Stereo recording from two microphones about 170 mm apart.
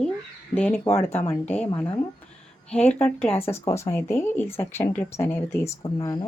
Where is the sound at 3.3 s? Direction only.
15° left (ahead or behind).